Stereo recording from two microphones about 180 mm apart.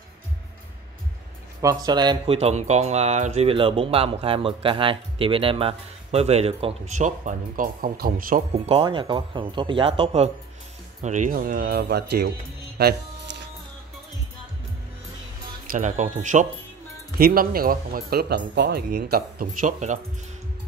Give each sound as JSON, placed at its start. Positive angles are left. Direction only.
{"t": 1.6, "sound": "speech", "side_deg": -20}
{"t": 2.3, "sound": "speech", "side_deg": -40}
{"t": 8.5, "sound": "speech", "side_deg": -30}
{"t": 12.7, "sound": "music", "side_deg": -65}
{"t": 15.6, "sound": "speech", "side_deg": -45}
{"t": 17.2, "sound": "speech", "side_deg": -55}